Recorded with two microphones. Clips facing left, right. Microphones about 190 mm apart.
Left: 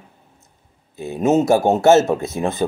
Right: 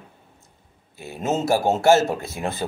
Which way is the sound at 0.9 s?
20° left (ahead or behind).